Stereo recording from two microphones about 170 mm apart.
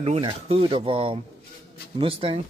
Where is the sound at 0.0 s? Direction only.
35° right (ahead or behind).